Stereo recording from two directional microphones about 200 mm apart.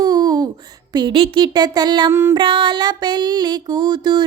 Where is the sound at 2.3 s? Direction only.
25° right (ahead or behind).